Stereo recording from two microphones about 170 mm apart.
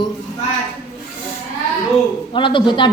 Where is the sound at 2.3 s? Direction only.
30° left (ahead or behind).